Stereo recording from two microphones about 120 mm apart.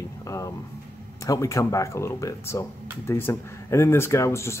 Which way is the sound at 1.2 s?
25° left (ahead or behind).